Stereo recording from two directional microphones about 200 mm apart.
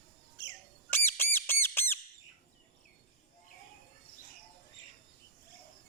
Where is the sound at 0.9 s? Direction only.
10° left (ahead or behind).